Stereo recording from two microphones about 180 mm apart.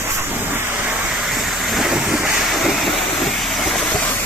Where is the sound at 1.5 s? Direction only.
Centre (ahead or behind).